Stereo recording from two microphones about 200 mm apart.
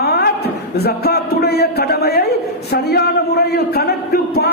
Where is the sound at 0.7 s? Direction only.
50° left (ahead or behind).